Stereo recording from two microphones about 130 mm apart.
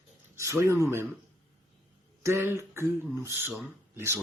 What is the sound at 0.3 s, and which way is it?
Speech, 20° right (ahead or behind).